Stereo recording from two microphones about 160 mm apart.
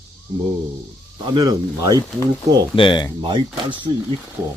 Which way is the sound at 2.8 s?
30° left (ahead or behind).